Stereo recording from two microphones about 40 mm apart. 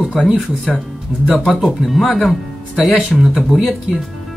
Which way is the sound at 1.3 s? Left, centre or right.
Centre.